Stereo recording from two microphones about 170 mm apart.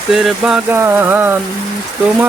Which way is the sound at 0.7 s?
15° right (ahead or behind).